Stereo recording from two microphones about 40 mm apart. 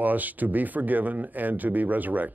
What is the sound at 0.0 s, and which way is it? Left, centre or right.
Speech, right.